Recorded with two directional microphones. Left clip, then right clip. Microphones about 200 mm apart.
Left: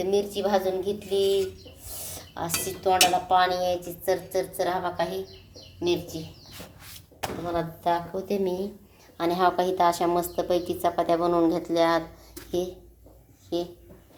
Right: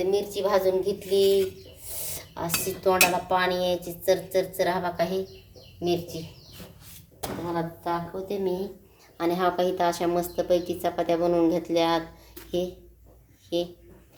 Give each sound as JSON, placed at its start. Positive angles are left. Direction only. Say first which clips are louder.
{"t": 0.0, "sound": "speech", "louder": "even", "side_deg": 0}
{"t": 7.5, "sound": "a woman's voice", "louder": "left 4 dB", "side_deg": 20}